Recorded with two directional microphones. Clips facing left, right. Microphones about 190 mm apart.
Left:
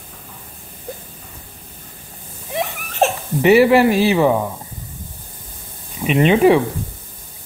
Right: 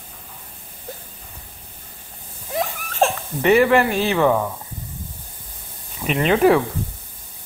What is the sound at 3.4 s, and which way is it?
Speech, 5° left (ahead or behind).